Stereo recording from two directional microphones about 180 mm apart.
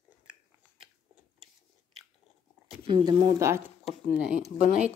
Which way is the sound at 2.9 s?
30° right (ahead or behind).